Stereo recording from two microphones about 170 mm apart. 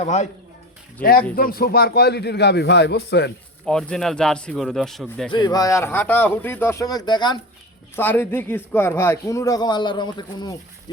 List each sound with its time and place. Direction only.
0.0 s speech: 45° left (ahead or behind)
1.4 s a man's voice: 60° left (ahead or behind); by 3.3 s 80° left
3.7 s speech: 5° left (ahead or behind)
5.3 s speech: 25° left (ahead or behind)
7.9 s speech: 10° left (ahead or behind)